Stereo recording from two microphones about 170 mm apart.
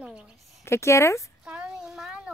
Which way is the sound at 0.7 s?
15° left (ahead or behind).